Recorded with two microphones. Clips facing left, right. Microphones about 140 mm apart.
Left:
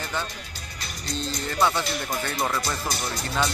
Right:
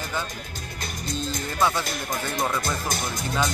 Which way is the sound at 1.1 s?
50° right (ahead or behind).